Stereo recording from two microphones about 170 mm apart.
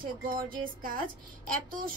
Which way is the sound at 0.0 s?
55° right (ahead or behind).